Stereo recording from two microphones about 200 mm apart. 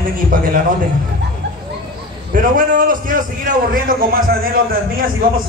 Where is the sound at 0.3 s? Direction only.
45° right (ahead or behind).